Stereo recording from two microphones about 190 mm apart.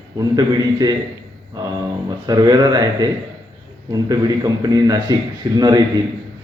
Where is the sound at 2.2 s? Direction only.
20° right (ahead or behind).